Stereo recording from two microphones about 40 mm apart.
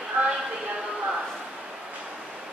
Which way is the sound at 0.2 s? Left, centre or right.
Right.